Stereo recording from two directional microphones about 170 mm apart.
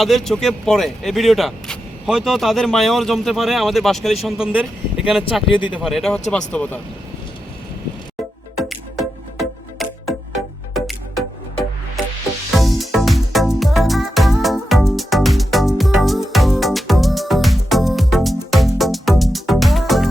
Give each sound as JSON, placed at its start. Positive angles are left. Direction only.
{"t": 0.0, "sound": "speech", "side_deg": 0}
{"t": 5.2, "sound": "speech", "side_deg": 30}
{"t": 5.8, "sound": "speech", "side_deg": 0}
{"t": 8.5, "sound": "music", "side_deg": 0}
{"t": 12.5, "sound": "music", "side_deg": 0}